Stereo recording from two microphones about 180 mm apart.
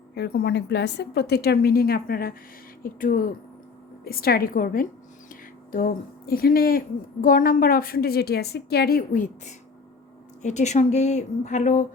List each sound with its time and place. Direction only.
0.1 s a woman's voice: 65° left (ahead or behind); by 11.9 s 45° left (ahead or behind)